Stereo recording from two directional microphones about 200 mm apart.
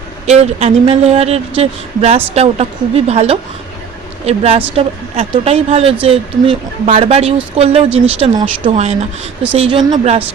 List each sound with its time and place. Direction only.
0.3 s speech: 30° right (ahead or behind)
8.7 s speech: 35° right (ahead or behind)